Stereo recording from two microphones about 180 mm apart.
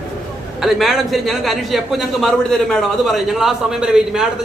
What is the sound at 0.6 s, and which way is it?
A man's voice, centre (ahead or behind).